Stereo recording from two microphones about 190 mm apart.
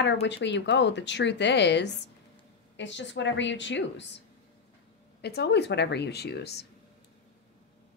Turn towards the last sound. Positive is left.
turn(degrees=60)  # may be behind; listen again after turning